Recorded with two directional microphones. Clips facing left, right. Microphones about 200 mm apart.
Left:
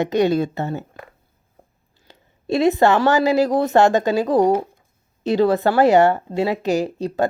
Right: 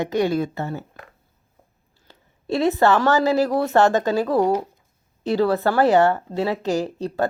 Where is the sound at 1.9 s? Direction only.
15° left (ahead or behind).